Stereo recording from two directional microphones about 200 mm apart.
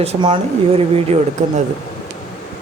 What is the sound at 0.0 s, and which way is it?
Speech, 25° right (ahead or behind).